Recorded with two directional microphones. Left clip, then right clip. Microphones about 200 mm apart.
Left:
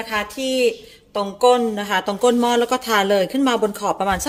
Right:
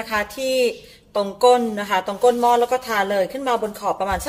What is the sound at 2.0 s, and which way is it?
Speech, 40° left (ahead or behind).